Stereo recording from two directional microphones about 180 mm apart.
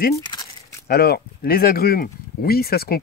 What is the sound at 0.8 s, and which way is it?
Speech, 60° left (ahead or behind).